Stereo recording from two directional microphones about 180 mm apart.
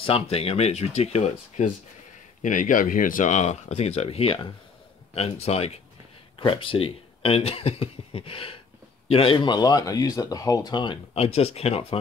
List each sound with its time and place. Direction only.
0.0 s speech: 35° left (ahead or behind)